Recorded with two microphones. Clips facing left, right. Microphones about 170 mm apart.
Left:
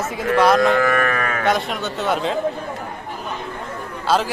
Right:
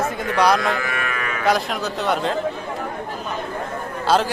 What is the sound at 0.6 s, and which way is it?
Sheep, 45° left (ahead or behind).